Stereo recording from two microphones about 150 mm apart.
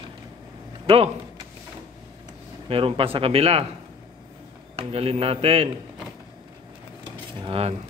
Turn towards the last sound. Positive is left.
turn(degrees=-40)  # may be behind; listen again after turning